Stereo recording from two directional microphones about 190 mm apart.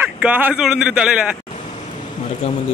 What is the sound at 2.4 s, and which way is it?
Speech, 30° left (ahead or behind).